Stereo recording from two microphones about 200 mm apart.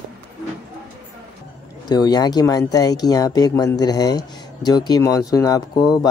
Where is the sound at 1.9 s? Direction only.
20° left (ahead or behind).